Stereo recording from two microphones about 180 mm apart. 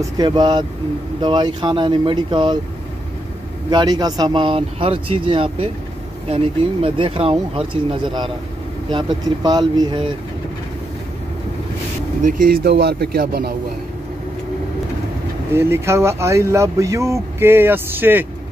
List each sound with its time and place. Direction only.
0.0 s speech: 25° right (ahead or behind)
3.7 s speech: 20° right (ahead or behind)
12.2 s speech: 50° right (ahead or behind)
15.5 s speech: 15° right (ahead or behind)